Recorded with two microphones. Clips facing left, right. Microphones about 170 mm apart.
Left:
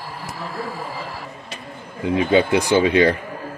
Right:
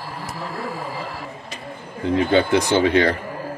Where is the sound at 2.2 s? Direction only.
10° left (ahead or behind).